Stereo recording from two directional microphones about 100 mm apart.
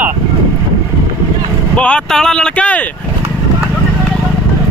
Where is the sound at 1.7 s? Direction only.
10° left (ahead or behind).